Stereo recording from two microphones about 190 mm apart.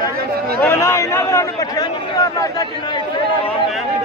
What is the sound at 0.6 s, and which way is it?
A man's voice, 15° left (ahead or behind).